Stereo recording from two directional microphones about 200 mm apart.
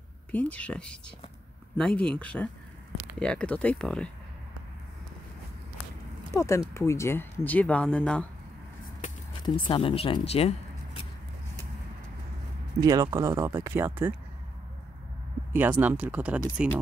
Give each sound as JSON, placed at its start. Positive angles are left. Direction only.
{"t": 0.3, "sound": "speech", "side_deg": 5}
{"t": 6.3, "sound": "speech", "side_deg": 15}
{"t": 9.7, "sound": "speech", "side_deg": 30}
{"t": 12.8, "sound": "speech", "side_deg": -20}
{"t": 15.8, "sound": "speech", "side_deg": -10}